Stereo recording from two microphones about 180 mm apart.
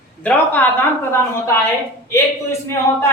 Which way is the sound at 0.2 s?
10° left (ahead or behind).